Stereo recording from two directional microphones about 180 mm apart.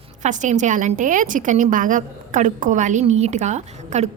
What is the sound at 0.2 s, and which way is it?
A woman's voice, 40° right (ahead or behind).